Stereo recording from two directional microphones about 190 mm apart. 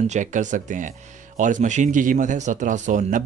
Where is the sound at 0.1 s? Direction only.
40° right (ahead or behind).